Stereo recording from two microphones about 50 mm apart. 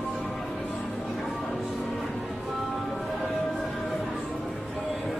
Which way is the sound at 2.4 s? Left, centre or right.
Centre.